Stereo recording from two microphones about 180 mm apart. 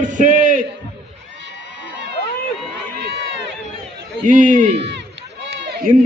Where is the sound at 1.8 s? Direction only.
85° right.